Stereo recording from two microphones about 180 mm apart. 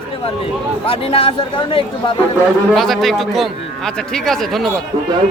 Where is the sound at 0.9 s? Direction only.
30° left (ahead or behind).